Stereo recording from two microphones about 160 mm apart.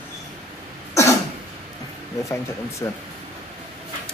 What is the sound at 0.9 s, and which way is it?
Cough, 20° left (ahead or behind).